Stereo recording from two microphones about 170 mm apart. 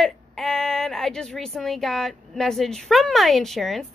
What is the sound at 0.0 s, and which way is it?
Speech, centre (ahead or behind).